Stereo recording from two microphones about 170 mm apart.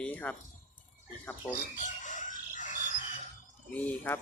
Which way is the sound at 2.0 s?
50° left (ahead or behind).